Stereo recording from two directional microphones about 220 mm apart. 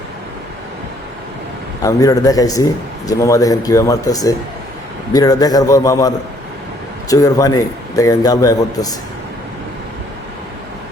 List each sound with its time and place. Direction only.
1.8 s a man's voice: 15° left (ahead or behind)